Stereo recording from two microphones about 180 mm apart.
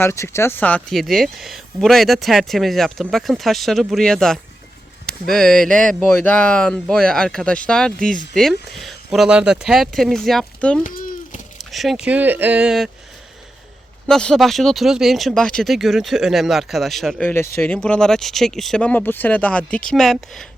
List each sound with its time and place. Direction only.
0.0 s speech: 15° left (ahead or behind)
10.8 s a sound: 45° left (ahead or behind)
11.5 s speech: centre (ahead or behind)
14.1 s speech: 5° left (ahead or behind)